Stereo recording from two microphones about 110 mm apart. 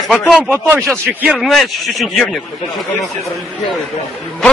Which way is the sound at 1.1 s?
15° right (ahead or behind).